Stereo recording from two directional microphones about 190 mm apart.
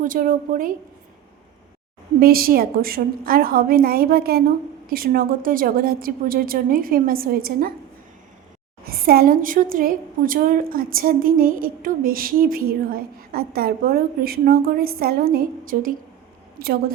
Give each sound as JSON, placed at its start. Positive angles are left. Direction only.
{"t": 0.0, "sound": "a woman's voice", "side_deg": -45}
{"t": 2.2, "sound": "a woman's voice", "side_deg": -50}
{"t": 8.9, "sound": "a woman's voice", "side_deg": -50}